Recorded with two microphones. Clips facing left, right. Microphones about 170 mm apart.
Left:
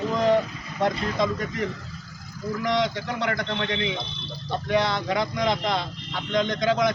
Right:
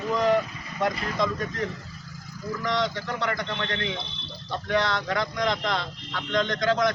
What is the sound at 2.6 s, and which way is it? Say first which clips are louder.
Speech: left 3 dB; 10° left (ahead or behind).